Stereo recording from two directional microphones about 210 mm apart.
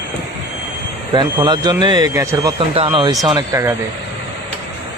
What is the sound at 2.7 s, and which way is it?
Speech, 25° right (ahead or behind).